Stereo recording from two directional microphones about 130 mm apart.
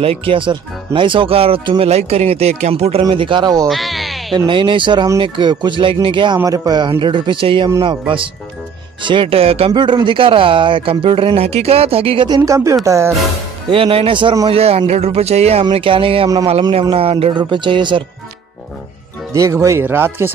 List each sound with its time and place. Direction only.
0.0 s speech: 45° right (ahead or behind)
3.0 s a man's voice: 40° right (ahead or behind)
3.6 s music: centre (ahead or behind)
4.5 s a man's voice: 40° right (ahead or behind)
9.7 s speech: 35° right (ahead or behind)
12.4 s speech: 25° right (ahead or behind)
13.7 s speech: 45° right (ahead or behind)
15.7 s a man's voice: 45° right (ahead or behind)
19.3 s speech: 25° right (ahead or behind)